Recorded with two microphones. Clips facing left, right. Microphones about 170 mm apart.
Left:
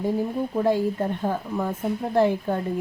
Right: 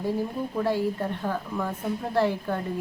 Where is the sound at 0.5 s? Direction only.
15° left (ahead or behind).